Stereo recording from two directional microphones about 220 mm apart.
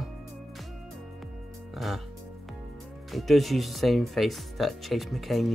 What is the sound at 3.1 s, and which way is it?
Speech, centre (ahead or behind).